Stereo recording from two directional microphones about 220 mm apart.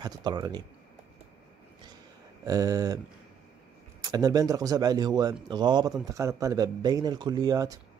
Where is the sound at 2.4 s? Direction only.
15° right (ahead or behind).